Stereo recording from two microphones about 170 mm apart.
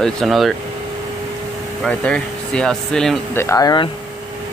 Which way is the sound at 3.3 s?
20° left (ahead or behind).